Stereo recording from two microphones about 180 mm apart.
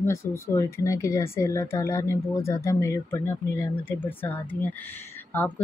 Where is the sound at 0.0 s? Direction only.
15° left (ahead or behind).